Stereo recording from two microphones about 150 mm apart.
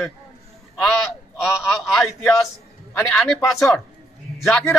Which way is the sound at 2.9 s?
20° left (ahead or behind).